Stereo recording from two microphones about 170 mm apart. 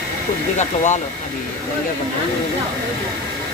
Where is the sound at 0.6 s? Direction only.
45° left (ahead or behind).